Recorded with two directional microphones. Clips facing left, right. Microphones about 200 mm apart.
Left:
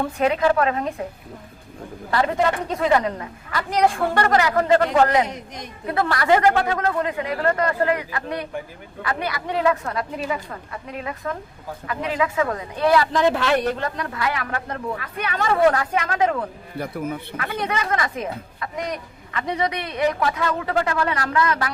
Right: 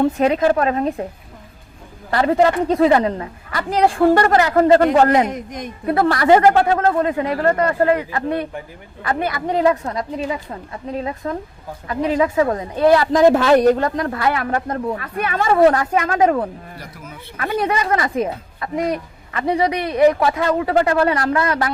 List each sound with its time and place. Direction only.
0.0 s a woman's voice: 35° right (ahead or behind)
2.0 s a woman's voice: 35° right (ahead or behind)
6.0 s a woman's voice: 35° right (ahead or behind)
9.0 s a woman's voice: 45° right (ahead or behind)
9.8 s a woman's voice: 20° right (ahead or behind); by 15.4 s 45° right (ahead or behind)
15.4 s a woman's voice: 30° right (ahead or behind)
16.7 s a man's voice: 55° left (ahead or behind)
17.3 s a woman's voice: 35° right (ahead or behind)